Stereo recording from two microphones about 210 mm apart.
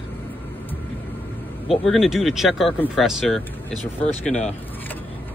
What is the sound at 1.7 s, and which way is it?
Speech, centre (ahead or behind).